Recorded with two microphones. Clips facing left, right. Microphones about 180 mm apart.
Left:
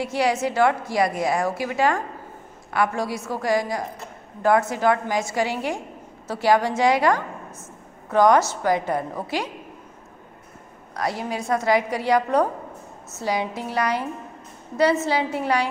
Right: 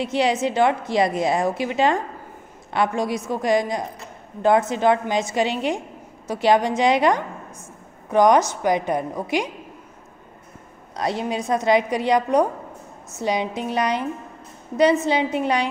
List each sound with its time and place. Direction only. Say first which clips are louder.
0.0 s a woman's voice: right 2 dB; 20° right (ahead or behind)
11.0 s a woman's voice: right 2 dB; 20° right (ahead or behind)
15.0 s a woman's voice: right 2 dB; 20° right (ahead or behind)